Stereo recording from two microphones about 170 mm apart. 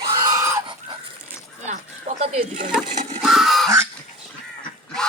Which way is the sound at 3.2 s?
Centre (ahead or behind).